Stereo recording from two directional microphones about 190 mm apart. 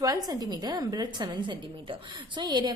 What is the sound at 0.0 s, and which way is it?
A woman's voice, 20° right (ahead or behind).